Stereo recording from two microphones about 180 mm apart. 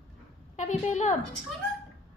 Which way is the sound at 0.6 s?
40° left (ahead or behind).